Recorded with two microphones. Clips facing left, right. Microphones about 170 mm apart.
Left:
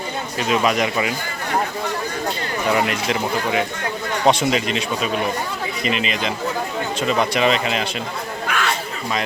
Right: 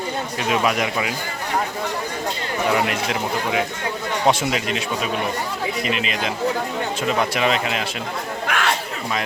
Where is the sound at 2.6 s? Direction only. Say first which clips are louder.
Left 1 dB; centre (ahead or behind).